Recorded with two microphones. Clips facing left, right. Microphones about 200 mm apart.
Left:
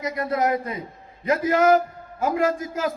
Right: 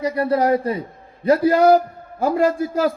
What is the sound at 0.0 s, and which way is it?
A man's voice, 35° right (ahead or behind).